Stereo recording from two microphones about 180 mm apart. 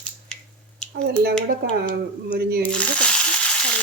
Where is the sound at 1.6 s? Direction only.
60° right (ahead or behind).